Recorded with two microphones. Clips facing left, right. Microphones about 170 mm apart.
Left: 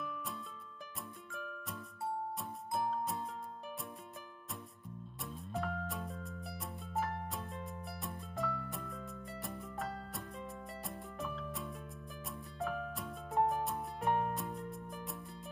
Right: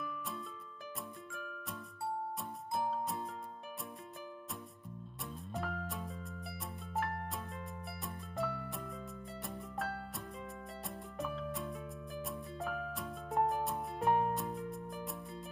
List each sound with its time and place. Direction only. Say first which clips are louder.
0.0 s music: right 1 dB; centre (ahead or behind)
5.2 s music: left 1 dB; centre (ahead or behind)